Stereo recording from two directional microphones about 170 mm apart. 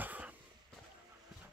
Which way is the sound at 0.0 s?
10° right (ahead or behind).